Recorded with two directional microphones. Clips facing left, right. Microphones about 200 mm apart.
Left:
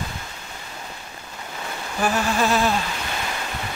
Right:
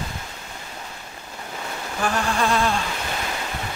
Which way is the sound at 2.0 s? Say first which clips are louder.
Left 1 dB; 5° left (ahead or behind).